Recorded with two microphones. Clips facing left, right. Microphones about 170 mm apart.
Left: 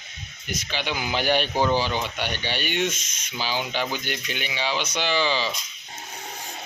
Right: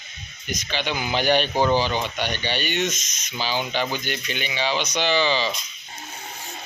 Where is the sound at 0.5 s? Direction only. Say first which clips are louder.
Right 2 dB; 5° left (ahead or behind).